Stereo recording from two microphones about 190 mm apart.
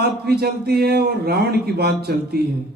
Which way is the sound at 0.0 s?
55° right (ahead or behind).